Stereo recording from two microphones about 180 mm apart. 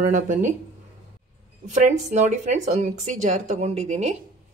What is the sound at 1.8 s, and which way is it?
Speech, 40° right (ahead or behind).